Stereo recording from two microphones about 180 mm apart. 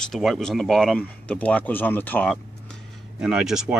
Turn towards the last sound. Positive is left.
turn(degrees=-5)  # may be behind; listen again after turning